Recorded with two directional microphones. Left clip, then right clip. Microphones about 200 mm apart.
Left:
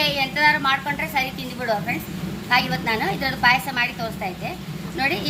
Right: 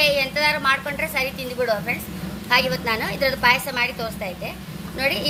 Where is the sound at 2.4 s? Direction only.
40° right (ahead or behind).